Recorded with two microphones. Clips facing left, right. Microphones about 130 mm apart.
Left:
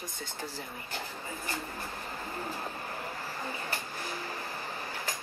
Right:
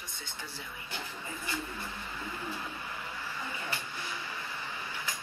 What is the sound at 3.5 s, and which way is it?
Vehicle, 40° left (ahead or behind).